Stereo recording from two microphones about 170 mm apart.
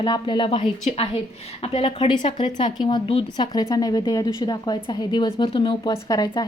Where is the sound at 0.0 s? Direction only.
25° left (ahead or behind).